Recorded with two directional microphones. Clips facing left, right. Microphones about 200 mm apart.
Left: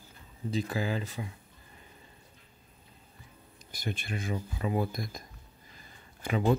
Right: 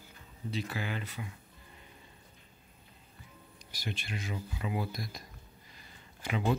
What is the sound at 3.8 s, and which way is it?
Speech, 50° left (ahead or behind).